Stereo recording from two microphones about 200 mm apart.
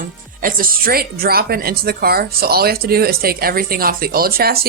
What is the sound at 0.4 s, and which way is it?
Speech, 45° right (ahead or behind).